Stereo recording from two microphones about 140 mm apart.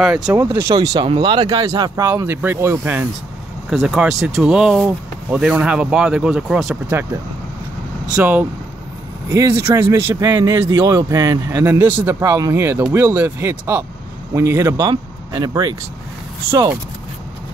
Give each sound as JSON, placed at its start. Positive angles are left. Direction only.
{"t": 0.0, "sound": "speech", "side_deg": -5}
{"t": 0.4, "sound": "a man's voice", "side_deg": -20}
{"t": 3.7, "sound": "speech", "side_deg": -5}
{"t": 8.2, "sound": "a man's voice", "side_deg": -10}